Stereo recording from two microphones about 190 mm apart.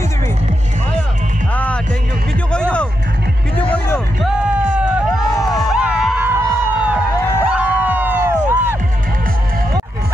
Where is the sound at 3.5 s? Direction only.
5° left (ahead or behind).